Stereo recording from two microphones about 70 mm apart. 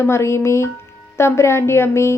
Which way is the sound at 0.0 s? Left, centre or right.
Left.